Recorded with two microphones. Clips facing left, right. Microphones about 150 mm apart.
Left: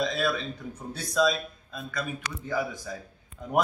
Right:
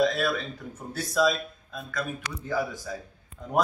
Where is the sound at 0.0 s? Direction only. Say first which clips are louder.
Right 3 dB; centre (ahead or behind).